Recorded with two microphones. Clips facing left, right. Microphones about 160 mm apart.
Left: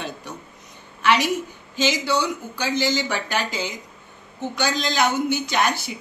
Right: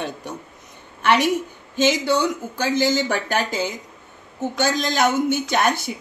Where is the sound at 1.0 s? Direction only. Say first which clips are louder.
Right 2 dB; 50° right (ahead or behind).